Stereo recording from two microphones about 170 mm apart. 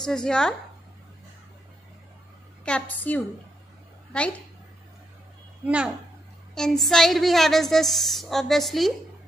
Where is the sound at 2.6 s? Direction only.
10° left (ahead or behind).